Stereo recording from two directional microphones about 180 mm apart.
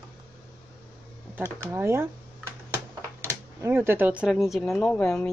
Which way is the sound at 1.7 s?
15° right (ahead or behind).